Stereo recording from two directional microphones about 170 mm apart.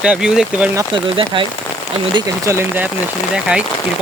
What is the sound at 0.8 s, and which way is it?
Speech, 30° right (ahead or behind).